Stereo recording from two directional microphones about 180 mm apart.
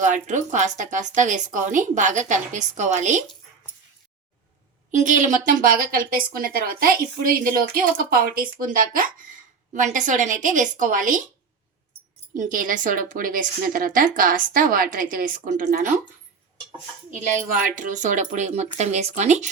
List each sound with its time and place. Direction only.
0.0 s a woman's voice: 45° right (ahead or behind)
4.9 s a woman's voice: 45° right (ahead or behind)
12.4 s a woman's voice: 50° right (ahead or behind)
17.1 s a woman's voice: 45° right (ahead or behind)